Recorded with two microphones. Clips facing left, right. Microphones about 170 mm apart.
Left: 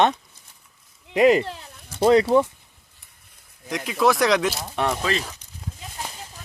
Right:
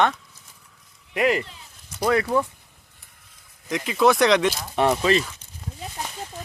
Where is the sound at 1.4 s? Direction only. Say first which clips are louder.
Left 12 dB; 65° left (ahead or behind).